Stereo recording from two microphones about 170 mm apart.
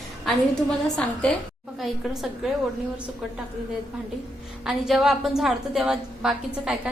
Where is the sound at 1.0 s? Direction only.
5° left (ahead or behind).